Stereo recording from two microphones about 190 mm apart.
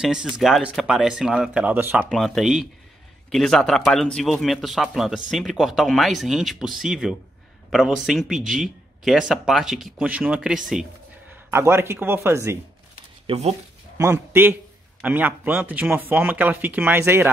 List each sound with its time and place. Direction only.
0.0 s a man's voice: 5° right (ahead or behind)
2.0 s a man's voice: centre (ahead or behind)
13.3 s speech: 35° right (ahead or behind)
13.9 s a man's voice: 15° right (ahead or behind)